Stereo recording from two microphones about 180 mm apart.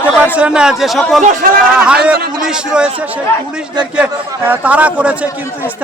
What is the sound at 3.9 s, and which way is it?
A man's voice, 5° right (ahead or behind).